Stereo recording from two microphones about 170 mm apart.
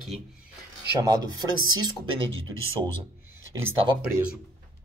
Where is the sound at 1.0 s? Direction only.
25° right (ahead or behind).